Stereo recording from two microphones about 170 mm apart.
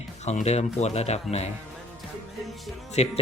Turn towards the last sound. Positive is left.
turn(degrees=40)  # may be behind; listen again after turning